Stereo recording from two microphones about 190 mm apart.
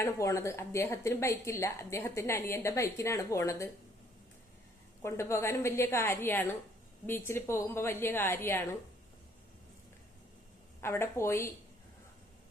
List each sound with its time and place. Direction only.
0.0 s speech: 15° left (ahead or behind)
5.0 s speech: 15° left (ahead or behind)
10.8 s speech: 15° left (ahead or behind)